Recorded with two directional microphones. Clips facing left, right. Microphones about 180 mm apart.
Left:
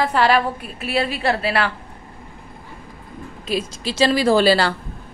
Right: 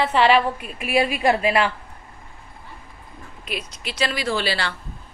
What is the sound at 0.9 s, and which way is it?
Speech, 15° right (ahead or behind).